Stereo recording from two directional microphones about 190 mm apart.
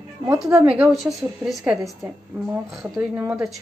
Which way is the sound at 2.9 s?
5° right (ahead or behind).